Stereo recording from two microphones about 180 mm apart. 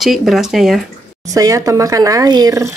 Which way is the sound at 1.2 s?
20° right (ahead or behind).